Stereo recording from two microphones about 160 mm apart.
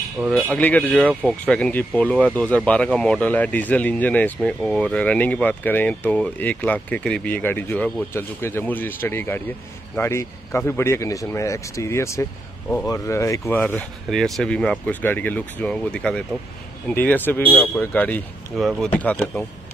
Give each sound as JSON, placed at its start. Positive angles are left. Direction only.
{"t": 0.3, "sound": "speech", "side_deg": 10}